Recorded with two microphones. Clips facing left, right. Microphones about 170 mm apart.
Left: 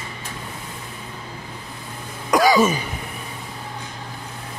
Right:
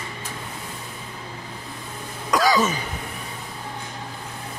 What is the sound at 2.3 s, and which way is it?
Throat clearing, 20° left (ahead or behind).